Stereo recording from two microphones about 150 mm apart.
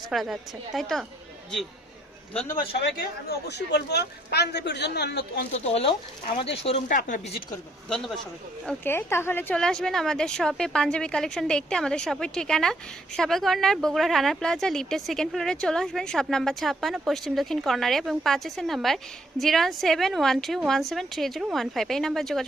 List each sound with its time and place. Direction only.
0.1 s a woman's voice: centre (ahead or behind)
3.2 s a man's voice: 90° left
5.5 s speech: 45° left (ahead or behind)
6.8 s a woman's voice: 60° left (ahead or behind)
7.9 s a woman's voice: 5° left (ahead or behind)